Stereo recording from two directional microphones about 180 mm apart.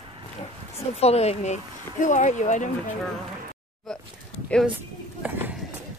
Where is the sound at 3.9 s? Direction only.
5° left (ahead or behind).